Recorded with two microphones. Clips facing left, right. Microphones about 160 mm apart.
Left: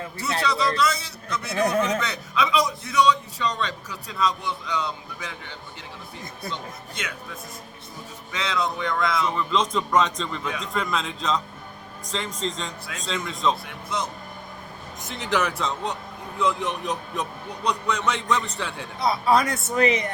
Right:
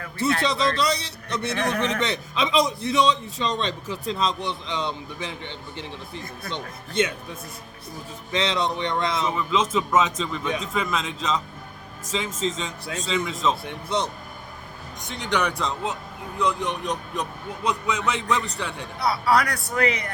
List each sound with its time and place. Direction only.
0.4 s a man's voice: 25° right (ahead or behind)
8.3 s a man's voice: 25° right (ahead or behind)
9.3 s a man's voice: 5° right (ahead or behind)
13.7 s a man's voice: 30° right (ahead or behind)
15.0 s a man's voice: centre (ahead or behind)
18.9 s a woman's voice: 20° left (ahead or behind)